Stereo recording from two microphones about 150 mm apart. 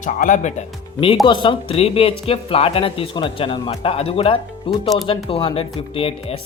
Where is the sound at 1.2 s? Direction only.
30° left (ahead or behind).